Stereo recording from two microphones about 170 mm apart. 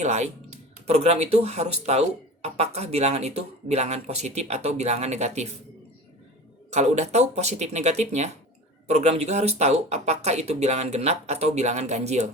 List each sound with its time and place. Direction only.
0.0 s speech: 45° right (ahead or behind)
6.7 s speech: 40° right (ahead or behind)